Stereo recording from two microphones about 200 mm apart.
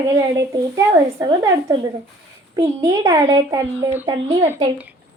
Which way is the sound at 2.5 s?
15° right (ahead or behind).